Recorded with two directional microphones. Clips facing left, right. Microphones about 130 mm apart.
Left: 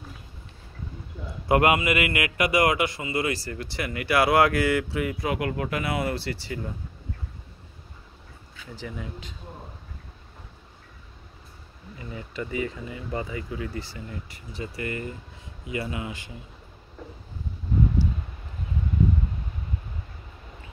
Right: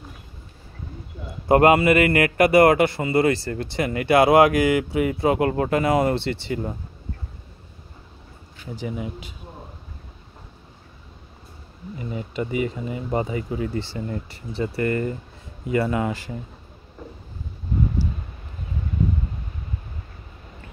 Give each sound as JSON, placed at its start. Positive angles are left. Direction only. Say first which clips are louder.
{"t": 1.5, "sound": "a man's voice", "louder": "right 6 dB", "side_deg": -35}
{"t": 3.3, "sound": "speech", "louder": "right 7 dB", "side_deg": -25}
{"t": 6.1, "sound": "speech", "louder": "right 6 dB", "side_deg": -25}
{"t": 8.7, "sound": "speech", "louder": "right 6 dB", "side_deg": -20}
{"t": 12.0, "sound": "speech", "louder": "right 6 dB", "side_deg": -20}
{"t": 13.9, "sound": "a man's voice", "louder": "right 8 dB", "side_deg": -40}